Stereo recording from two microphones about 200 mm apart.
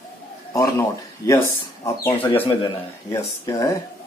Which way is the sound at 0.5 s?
15° left (ahead or behind).